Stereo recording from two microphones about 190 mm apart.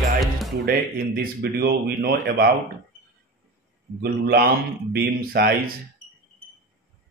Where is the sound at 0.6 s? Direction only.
50° right (ahead or behind).